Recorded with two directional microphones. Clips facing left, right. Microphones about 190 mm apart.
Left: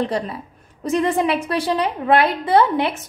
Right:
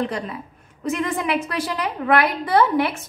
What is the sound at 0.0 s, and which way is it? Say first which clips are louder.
A woman's voice: left 3 dB; 30° left (ahead or behind).